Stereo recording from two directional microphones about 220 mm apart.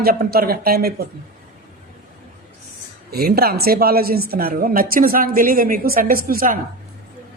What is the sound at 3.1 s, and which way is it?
A woman's voice, 45° right (ahead or behind).